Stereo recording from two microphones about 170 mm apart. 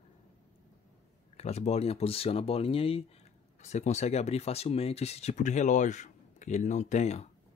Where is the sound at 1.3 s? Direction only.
40° left (ahead or behind).